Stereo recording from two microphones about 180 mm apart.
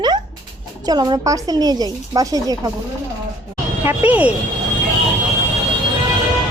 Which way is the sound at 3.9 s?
10° right (ahead or behind).